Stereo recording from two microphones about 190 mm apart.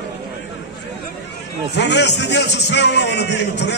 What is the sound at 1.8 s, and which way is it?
Speech, 65° left (ahead or behind).